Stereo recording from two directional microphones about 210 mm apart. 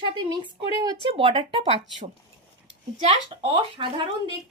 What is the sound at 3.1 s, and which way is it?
Speech, 25° right (ahead or behind).